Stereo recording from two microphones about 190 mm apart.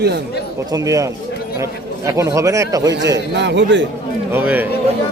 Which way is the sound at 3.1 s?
65° right (ahead or behind).